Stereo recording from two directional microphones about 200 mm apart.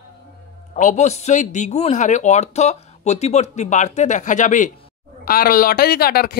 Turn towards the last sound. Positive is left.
turn(degrees=50)  # may be behind; listen again after turning